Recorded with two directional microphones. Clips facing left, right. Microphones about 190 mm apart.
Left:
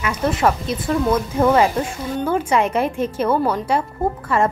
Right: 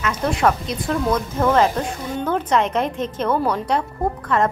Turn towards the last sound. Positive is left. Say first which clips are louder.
# left 1 dB
turn(degrees=5)  # may be behind; listen again after turning